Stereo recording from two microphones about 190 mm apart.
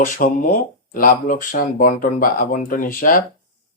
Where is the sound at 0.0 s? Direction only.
45° left (ahead or behind).